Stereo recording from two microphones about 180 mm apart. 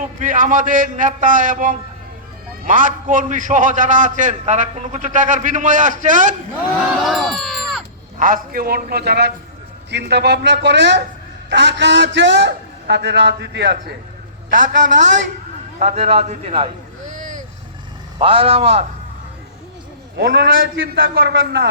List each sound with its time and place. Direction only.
0.2 s a man's voice: 45° right (ahead or behind)
7.0 s a sound: centre (ahead or behind)
8.2 s a man's voice: 50° right (ahead or behind); by 13.9 s 70° right (ahead or behind)
14.9 s a man's voice: 45° right (ahead or behind)
17.1 s vehicle: 45° right (ahead or behind)
18.2 s a man's voice: 30° right (ahead or behind)
20.1 s a man's voice: 60° right (ahead or behind)